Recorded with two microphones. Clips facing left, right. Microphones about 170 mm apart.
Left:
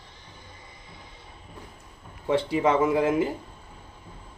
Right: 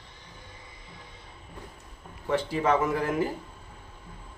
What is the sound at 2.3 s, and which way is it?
Speech, 15° left (ahead or behind).